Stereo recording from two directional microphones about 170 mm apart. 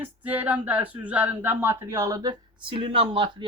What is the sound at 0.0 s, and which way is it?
A woman's voice, 10° right (ahead or behind).